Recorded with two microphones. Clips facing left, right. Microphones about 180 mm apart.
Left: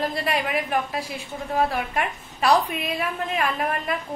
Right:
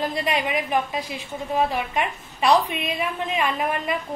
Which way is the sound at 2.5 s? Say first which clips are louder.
Right 1 dB; centre (ahead or behind).